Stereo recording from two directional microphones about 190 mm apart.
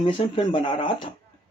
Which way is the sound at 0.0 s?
25° left (ahead or behind).